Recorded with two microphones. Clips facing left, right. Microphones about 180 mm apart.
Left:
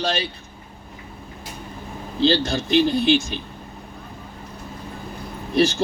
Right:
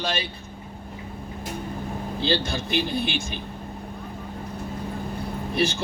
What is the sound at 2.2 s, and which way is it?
A man's voice, 55° right (ahead or behind).